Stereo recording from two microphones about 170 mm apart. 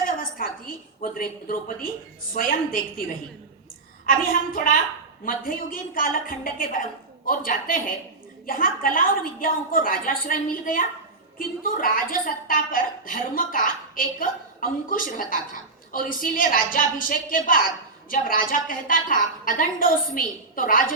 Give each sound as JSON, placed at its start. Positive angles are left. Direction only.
{"t": 0.0, "sound": "a sound", "side_deg": 55}
{"t": 1.0, "sound": "a woman's voice", "side_deg": 55}
{"t": 4.0, "sound": "a woman's voice", "side_deg": 55}